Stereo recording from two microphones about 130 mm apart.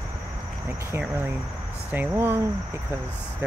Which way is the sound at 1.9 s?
15° right (ahead or behind).